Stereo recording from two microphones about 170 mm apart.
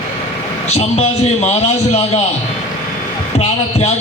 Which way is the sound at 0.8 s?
40° left (ahead or behind).